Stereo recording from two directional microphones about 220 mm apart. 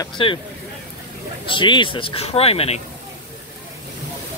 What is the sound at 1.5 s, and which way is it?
Speech, 20° left (ahead or behind).